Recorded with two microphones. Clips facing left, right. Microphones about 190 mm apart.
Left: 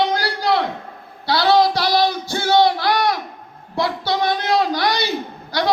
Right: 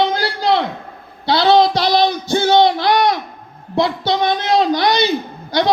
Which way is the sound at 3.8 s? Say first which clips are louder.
Right 4 dB; 20° right (ahead or behind).